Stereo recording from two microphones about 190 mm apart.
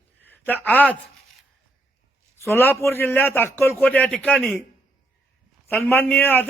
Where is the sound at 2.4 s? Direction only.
10° left (ahead or behind).